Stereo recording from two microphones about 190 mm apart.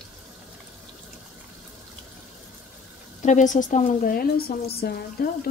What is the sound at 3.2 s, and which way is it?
A woman's voice, 40° left (ahead or behind).